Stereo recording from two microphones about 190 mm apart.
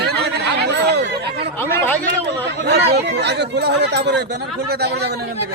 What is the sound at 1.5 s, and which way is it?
Speech, 10° left (ahead or behind).